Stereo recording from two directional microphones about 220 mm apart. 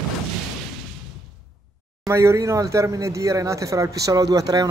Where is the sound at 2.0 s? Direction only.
15° right (ahead or behind).